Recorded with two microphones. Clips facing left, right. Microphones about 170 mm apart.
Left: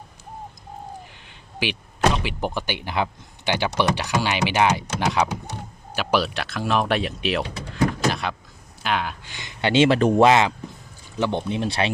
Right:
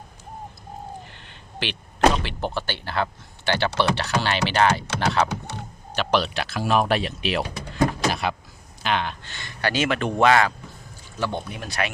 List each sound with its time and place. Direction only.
1.6 s speech: 10° left (ahead or behind)
8.1 s power windows: 5° right (ahead or behind)
8.8 s speech: 5° left (ahead or behind); by 10.2 s 35° left (ahead or behind)
10.2 s speech: 25° left (ahead or behind)